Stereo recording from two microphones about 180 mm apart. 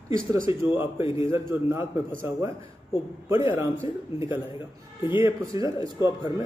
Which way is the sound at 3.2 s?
10° right (ahead or behind).